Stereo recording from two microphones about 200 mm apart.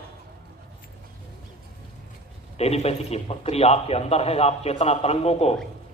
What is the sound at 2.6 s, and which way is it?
A man's voice, 30° left (ahead or behind).